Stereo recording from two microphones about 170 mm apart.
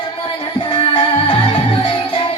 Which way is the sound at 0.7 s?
30° left (ahead or behind).